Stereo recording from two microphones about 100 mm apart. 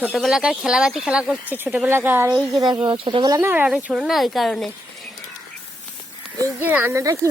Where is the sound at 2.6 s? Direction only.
45° right (ahead or behind).